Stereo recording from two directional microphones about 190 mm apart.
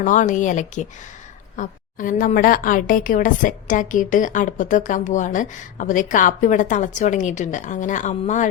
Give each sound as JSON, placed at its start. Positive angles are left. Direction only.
{"t": 0.0, "sound": "a woman's voice", "side_deg": 40}